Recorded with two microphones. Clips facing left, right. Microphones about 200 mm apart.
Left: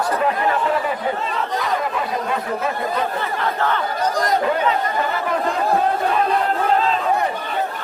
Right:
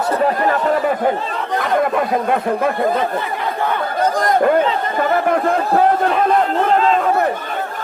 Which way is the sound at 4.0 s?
55° right (ahead or behind).